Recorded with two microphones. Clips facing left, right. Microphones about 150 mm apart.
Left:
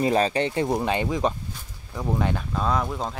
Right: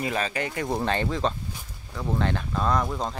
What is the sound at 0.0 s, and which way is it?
Speech, 35° left (ahead or behind).